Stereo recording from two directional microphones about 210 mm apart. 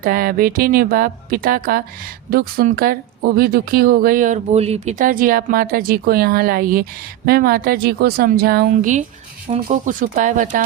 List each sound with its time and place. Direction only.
0.0 s speech: 40° right (ahead or behind)
8.7 s speech: 35° right (ahead or behind)